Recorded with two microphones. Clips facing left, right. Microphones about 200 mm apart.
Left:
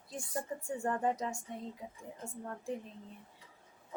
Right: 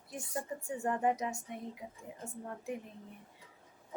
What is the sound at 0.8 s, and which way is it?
Speech, 15° right (ahead or behind).